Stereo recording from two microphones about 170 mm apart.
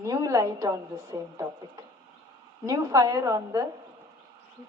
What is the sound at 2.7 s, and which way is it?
Speech, 20° right (ahead or behind).